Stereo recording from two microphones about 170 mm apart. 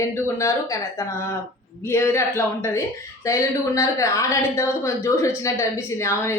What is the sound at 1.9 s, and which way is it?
A woman's voice, 15° left (ahead or behind).